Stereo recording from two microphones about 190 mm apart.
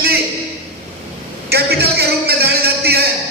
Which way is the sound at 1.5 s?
55° right (ahead or behind).